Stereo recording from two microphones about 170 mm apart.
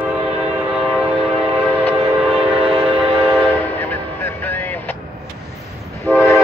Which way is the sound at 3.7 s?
10° left (ahead or behind).